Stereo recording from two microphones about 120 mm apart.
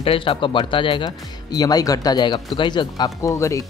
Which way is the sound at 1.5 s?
30° left (ahead or behind).